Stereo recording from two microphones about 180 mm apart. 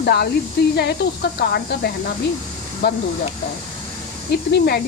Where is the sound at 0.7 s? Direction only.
65° left (ahead or behind).